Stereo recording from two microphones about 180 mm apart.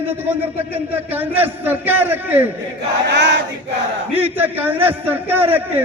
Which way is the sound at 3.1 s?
75° right (ahead or behind).